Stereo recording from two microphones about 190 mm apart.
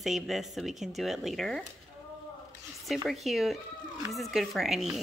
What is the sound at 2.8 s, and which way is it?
Speech, centre (ahead or behind).